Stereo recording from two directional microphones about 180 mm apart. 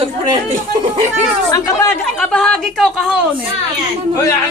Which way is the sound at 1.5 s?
20° left (ahead or behind).